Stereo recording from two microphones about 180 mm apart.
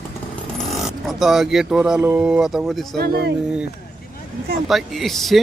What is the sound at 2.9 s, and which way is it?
Speech, 60° right (ahead or behind).